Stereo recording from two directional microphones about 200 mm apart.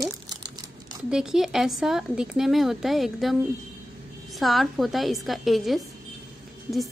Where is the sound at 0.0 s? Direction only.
20° right (ahead or behind).